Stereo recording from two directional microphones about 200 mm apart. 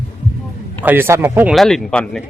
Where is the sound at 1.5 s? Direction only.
Centre (ahead or behind).